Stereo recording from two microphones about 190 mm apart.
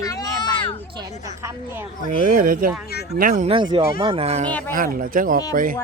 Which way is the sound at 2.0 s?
40° right (ahead or behind).